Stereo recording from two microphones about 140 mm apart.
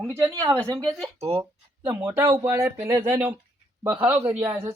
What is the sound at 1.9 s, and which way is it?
Speech, 15° right (ahead or behind).